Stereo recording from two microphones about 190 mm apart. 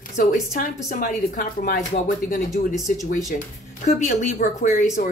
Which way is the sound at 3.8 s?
40° left (ahead or behind).